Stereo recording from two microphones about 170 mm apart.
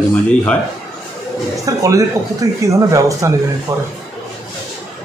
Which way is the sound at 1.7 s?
20° right (ahead or behind).